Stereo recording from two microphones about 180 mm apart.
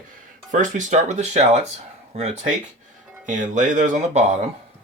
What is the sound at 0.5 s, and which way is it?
Speech, 45° right (ahead or behind).